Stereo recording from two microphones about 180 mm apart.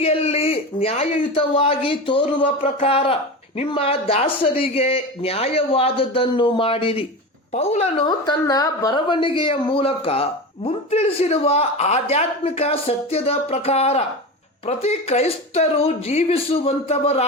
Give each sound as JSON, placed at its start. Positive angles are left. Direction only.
{"t": 0.0, "sound": "a woman's voice", "side_deg": 35}
{"t": 8.0, "sound": "a woman's voice", "side_deg": 25}